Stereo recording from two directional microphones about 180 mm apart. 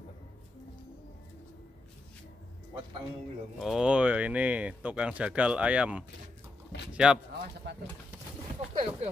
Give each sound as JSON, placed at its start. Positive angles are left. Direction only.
{"t": 3.5, "sound": "speech", "side_deg": 0}
{"t": 7.7, "sound": "speech", "side_deg": -75}
{"t": 8.7, "sound": "speech", "side_deg": -30}